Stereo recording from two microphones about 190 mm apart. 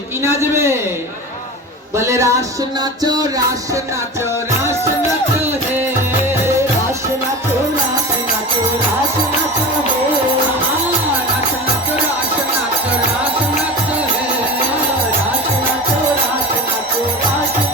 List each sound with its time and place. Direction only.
0.2 s a woman's voice: 15° right (ahead or behind)
2.0 s a woman's voice: 15° right (ahead or behind)
3.0 s music: 20° right (ahead or behind)